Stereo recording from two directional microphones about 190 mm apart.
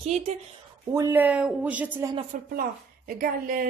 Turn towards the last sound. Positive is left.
turn(degrees=-50)  # may be behind; listen again after turning